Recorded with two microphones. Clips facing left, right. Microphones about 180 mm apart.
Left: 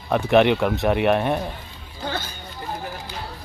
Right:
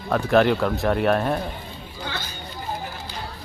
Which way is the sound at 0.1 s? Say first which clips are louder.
Left 1 dB; 15° left (ahead or behind).